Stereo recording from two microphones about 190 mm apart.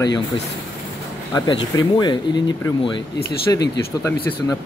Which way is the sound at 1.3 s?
20° left (ahead or behind).